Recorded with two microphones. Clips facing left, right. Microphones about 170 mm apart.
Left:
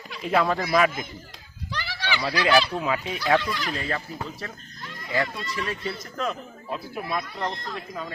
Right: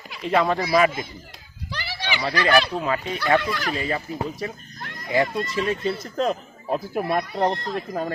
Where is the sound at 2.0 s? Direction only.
15° right (ahead or behind).